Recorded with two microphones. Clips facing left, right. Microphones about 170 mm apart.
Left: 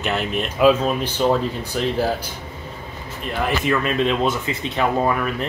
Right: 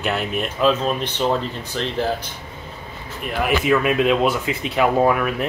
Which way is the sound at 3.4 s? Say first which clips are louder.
Right 3 dB; 10° right (ahead or behind).